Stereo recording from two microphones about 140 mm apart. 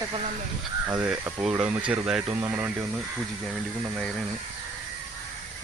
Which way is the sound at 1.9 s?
5° right (ahead or behind).